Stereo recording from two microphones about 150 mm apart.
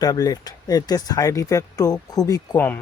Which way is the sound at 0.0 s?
25° left (ahead or behind).